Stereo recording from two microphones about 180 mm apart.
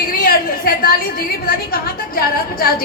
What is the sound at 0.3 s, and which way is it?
Chatter, 55° left (ahead or behind).